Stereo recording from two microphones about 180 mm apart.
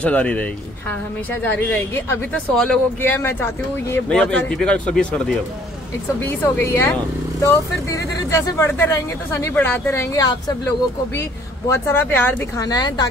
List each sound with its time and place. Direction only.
0.0 s speech: 5° left (ahead or behind)
1.7 s speech: 5° left (ahead or behind)
11.7 s speech: 10° left (ahead or behind)